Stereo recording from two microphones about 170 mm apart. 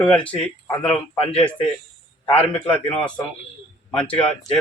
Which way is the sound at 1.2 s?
35° left (ahead or behind).